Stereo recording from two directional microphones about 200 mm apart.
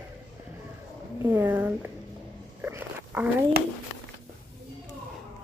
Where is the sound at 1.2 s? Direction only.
10° right (ahead or behind).